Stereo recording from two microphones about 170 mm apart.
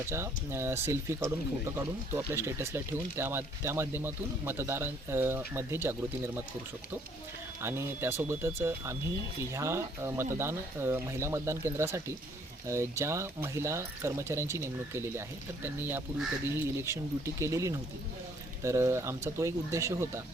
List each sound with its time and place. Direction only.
0.1 s speech: 15° right (ahead or behind)
7.6 s speech: 15° right (ahead or behind)